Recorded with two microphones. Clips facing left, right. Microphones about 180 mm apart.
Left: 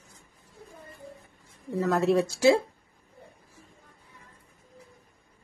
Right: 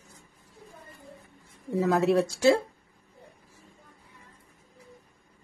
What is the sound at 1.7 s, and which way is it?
Speech, centre (ahead or behind).